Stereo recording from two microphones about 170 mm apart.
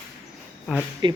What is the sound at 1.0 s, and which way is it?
Speech, 25° right (ahead or behind).